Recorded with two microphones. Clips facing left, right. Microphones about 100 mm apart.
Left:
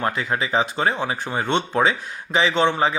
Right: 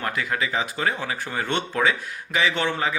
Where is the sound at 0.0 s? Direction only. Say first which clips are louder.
Left 3 dB; 25° left (ahead or behind).